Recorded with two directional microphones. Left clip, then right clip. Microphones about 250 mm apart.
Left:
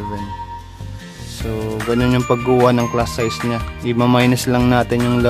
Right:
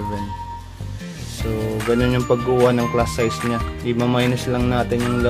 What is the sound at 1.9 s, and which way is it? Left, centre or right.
Speech, centre.